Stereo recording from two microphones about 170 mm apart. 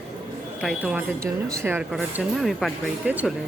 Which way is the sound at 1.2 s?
15° right (ahead or behind).